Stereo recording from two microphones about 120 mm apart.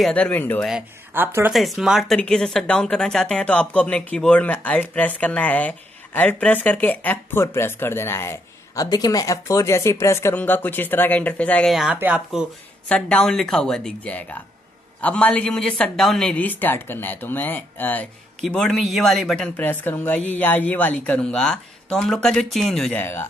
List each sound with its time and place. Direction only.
0.1 s speech: 15° left (ahead or behind)
1.1 s speech: 15° right (ahead or behind)
1.5 s speech: centre (ahead or behind)
11.7 s speech: 5° right (ahead or behind)
12.8 s speech: 10° left (ahead or behind)
22.9 s speech: 20° left (ahead or behind)